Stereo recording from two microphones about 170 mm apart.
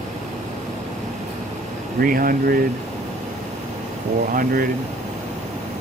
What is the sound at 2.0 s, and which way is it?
Speech, 55° right (ahead or behind).